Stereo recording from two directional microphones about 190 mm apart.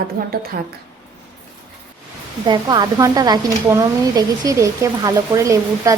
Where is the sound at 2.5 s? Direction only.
20° right (ahead or behind).